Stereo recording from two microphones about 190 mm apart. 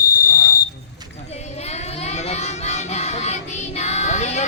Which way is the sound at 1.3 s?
35° left (ahead or behind).